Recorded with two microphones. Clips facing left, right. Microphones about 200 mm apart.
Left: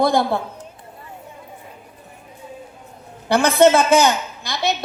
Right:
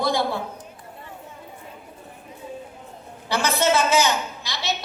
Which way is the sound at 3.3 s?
55° left (ahead or behind).